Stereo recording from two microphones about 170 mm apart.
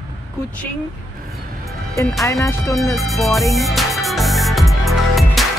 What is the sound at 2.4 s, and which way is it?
Speech, 20° left (ahead or behind).